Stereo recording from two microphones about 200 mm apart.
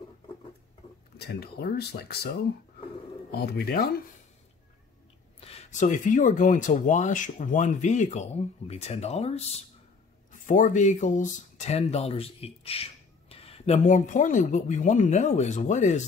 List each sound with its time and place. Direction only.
1.1 s speech: 55° left (ahead or behind)
3.3 s speech: 50° left (ahead or behind)
5.4 s speech: 35° left (ahead or behind)